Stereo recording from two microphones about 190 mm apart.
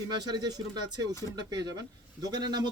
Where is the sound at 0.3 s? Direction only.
20° right (ahead or behind).